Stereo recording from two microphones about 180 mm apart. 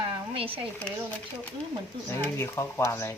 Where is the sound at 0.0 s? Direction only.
30° right (ahead or behind).